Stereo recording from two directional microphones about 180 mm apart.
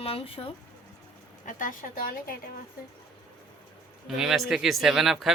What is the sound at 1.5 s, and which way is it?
Speech, 45° left (ahead or behind).